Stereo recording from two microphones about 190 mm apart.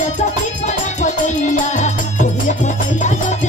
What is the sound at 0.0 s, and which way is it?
Music, 40° left (ahead or behind).